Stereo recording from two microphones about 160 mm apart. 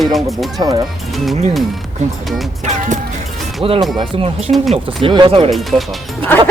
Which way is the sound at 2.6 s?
50° right (ahead or behind).